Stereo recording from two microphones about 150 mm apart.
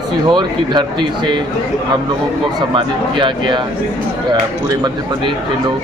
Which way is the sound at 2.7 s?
30° right (ahead or behind).